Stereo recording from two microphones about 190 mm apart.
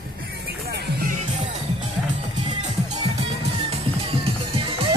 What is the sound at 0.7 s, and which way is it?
Music, 60° right (ahead or behind).